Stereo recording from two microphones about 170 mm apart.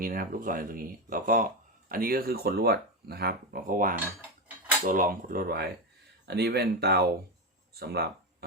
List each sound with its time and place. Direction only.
0.0 s speech: 55° right (ahead or behind)